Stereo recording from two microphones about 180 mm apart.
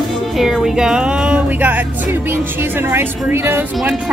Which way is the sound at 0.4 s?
Centre (ahead or behind).